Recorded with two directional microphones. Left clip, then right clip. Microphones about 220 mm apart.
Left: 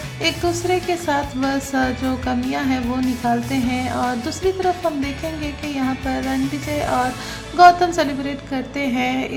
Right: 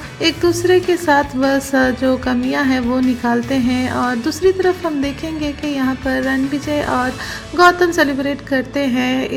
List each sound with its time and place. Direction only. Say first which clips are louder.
0.2 s a woman's voice: right 5 dB; 20° right (ahead or behind)
7.5 s speech: even; 15° right (ahead or behind)